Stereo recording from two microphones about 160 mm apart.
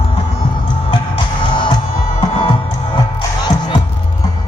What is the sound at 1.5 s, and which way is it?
Music, 30° left (ahead or behind).